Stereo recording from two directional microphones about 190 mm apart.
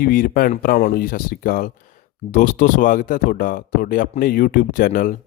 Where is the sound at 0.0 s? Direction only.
50° left (ahead or behind).